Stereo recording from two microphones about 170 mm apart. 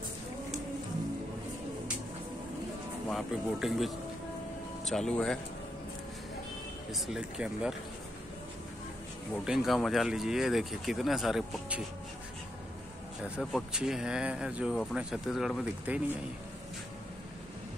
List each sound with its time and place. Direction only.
3.1 s speech: centre (ahead or behind)
6.9 s speech: centre (ahead or behind)
9.4 s speech: 5° right (ahead or behind)
13.2 s speech: centre (ahead or behind)